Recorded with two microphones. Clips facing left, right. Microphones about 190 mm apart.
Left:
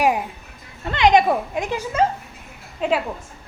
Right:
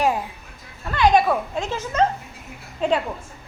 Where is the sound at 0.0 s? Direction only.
15° left (ahead or behind).